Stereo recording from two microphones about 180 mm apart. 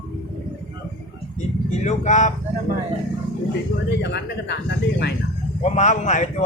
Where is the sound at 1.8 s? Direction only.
40° left (ahead or behind).